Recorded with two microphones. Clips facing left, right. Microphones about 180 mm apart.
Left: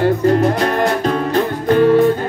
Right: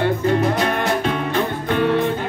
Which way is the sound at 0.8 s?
40° left (ahead or behind).